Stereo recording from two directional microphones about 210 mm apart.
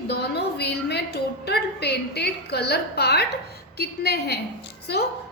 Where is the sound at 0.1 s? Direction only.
50° left (ahead or behind).